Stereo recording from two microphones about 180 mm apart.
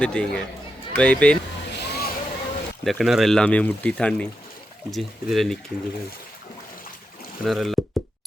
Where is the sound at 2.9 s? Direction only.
Centre (ahead or behind).